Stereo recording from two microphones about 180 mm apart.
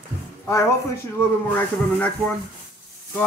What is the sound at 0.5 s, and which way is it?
Speech, 15° left (ahead or behind).